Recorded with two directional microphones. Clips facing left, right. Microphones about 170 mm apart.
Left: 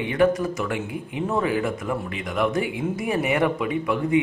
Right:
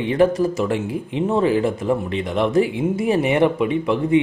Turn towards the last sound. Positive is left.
turn(degrees=-25)  # may be behind; listen again after turning